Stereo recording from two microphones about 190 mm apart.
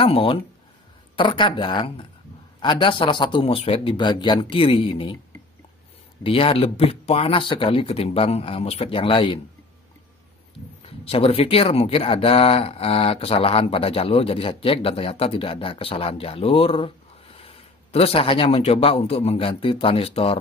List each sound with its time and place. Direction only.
0.0 s speech: 30° left (ahead or behind)
6.2 s speech: 30° left (ahead or behind)
10.9 s speech: 30° left (ahead or behind)